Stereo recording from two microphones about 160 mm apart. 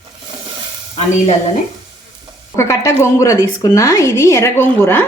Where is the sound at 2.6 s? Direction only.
20° left (ahead or behind).